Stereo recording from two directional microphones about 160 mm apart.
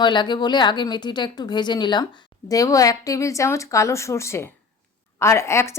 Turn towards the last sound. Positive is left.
turn(degrees=15)  # may be behind; listen again after turning